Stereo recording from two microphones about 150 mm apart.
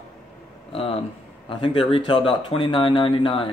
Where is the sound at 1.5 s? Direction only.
35° left (ahead or behind).